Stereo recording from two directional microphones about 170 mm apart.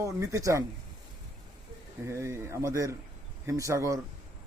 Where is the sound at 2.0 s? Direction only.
15° right (ahead or behind).